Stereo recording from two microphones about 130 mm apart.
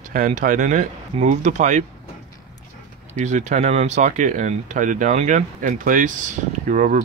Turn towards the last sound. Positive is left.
turn(degrees=-75)  # may be behind; listen again after turning